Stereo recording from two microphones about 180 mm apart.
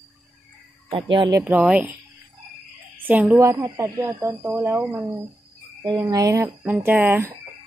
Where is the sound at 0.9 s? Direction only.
25° right (ahead or behind).